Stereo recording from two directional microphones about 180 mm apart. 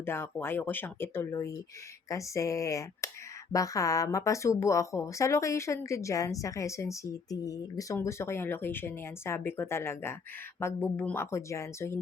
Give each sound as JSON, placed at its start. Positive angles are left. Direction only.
{"t": 0.0, "sound": "speech", "side_deg": 10}